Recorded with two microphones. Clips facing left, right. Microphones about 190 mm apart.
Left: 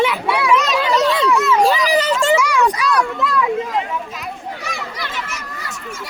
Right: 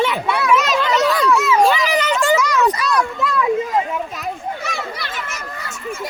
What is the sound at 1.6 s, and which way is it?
Children playing, 35° left (ahead or behind).